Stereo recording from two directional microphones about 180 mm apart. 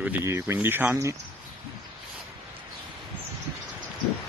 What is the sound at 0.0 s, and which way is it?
Speech, 10° right (ahead or behind).